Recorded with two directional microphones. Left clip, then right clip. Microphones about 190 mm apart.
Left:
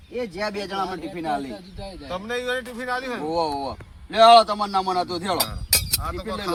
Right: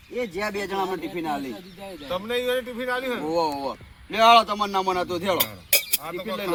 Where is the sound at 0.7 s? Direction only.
15° left (ahead or behind).